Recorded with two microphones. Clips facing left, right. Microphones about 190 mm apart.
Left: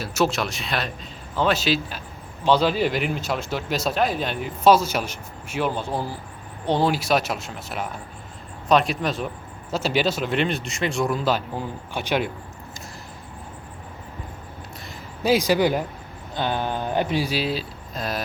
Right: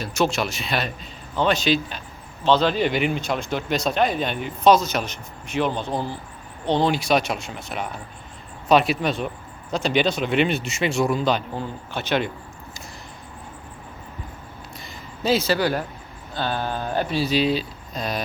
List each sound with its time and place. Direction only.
0.0 s speech: 5° left (ahead or behind)
15.2 s speech: 15° left (ahead or behind)